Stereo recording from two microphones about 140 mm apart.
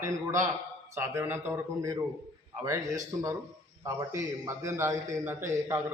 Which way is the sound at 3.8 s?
20° right (ahead or behind).